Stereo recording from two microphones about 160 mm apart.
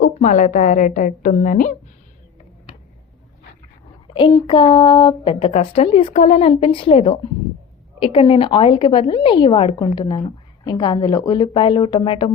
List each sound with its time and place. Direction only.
0.0 s a woman's voice: 50° left (ahead or behind)
4.4 s a woman's voice: 30° left (ahead or behind)